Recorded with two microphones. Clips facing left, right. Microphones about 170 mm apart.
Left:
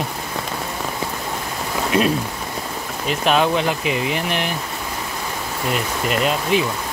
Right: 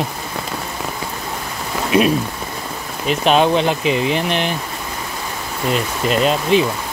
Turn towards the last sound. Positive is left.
turn(degrees=-25)  # may be behind; listen again after turning